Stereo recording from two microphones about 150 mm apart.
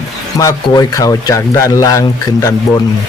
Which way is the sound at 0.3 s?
25° left (ahead or behind).